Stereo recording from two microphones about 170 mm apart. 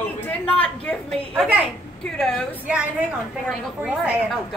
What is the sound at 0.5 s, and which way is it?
A woman's voice, 5° left (ahead or behind).